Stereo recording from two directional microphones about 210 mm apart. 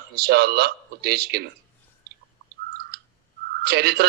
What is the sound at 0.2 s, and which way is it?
A man's voice, 50° right (ahead or behind).